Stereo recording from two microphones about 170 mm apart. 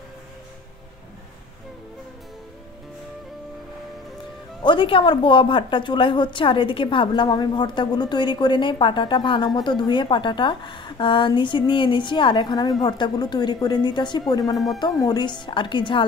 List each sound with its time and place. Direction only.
4.6 s a woman's voice: 30° left (ahead or behind)